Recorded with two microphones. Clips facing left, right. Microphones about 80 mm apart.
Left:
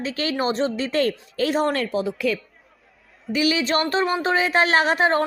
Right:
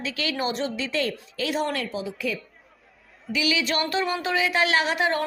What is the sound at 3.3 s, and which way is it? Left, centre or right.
Speech, left.